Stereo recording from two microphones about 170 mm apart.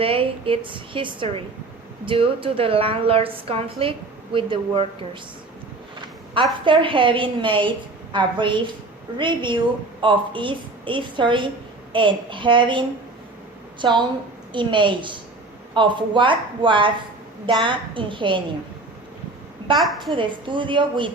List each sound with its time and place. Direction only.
0.0 s a woman's voice: 30° right (ahead or behind)
6.7 s a woman's voice: 30° right (ahead or behind)
14.5 s a woman's voice: 30° right (ahead or behind)
19.8 s a woman's voice: centre (ahead or behind)
20.1 s a woman's voice: 30° right (ahead or behind)